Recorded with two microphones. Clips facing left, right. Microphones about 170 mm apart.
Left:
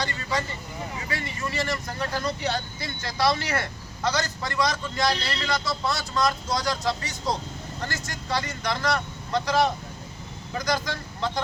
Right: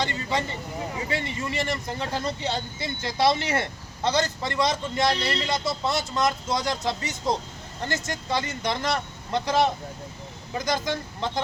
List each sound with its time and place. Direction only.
0.0 s speech: 25° right (ahead or behind)
10.7 s speech: 20° right (ahead or behind)